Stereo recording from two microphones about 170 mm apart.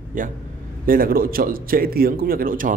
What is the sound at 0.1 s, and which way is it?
A man's voice, 55° right (ahead or behind).